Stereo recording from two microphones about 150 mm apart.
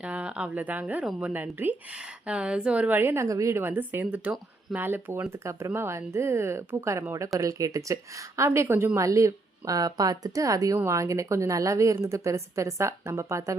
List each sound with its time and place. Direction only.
0.0 s a woman's voice: 10° right (ahead or behind)